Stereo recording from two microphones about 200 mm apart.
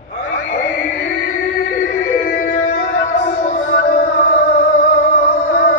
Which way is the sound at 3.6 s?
55° left (ahead or behind).